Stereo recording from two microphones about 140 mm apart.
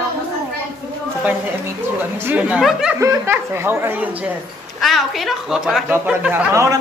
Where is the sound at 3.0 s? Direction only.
20° right (ahead or behind).